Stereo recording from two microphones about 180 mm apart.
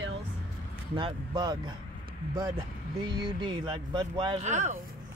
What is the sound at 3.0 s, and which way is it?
Speech, 25° right (ahead or behind).